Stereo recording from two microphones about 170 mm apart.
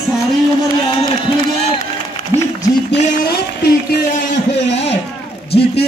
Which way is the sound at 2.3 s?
20° right (ahead or behind).